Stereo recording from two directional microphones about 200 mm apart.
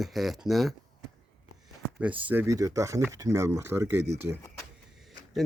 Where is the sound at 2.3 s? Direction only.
15° right (ahead or behind).